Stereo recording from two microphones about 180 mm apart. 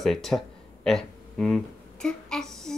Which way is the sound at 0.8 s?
Centre (ahead or behind).